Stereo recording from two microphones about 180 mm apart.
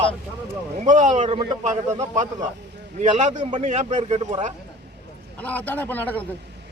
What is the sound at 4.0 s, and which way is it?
Speech, 30° right (ahead or behind).